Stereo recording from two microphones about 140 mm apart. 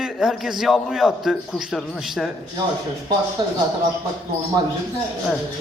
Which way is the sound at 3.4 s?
30° right (ahead or behind).